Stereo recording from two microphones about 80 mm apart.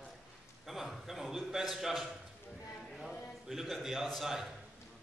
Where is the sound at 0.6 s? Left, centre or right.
Centre.